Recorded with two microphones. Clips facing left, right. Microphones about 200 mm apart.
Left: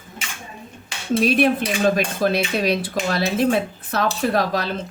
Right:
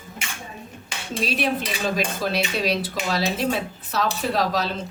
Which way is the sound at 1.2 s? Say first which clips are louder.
Left 6 dB; 55° left (ahead or behind).